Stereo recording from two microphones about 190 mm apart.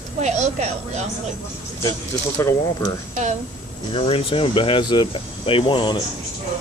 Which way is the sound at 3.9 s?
30° left (ahead or behind).